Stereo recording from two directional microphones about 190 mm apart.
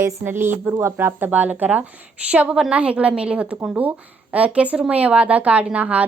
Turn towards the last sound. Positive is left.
turn(degrees=-5)  # may be behind; listen again after turning